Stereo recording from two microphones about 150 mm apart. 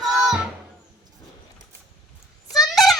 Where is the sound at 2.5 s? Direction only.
25° left (ahead or behind).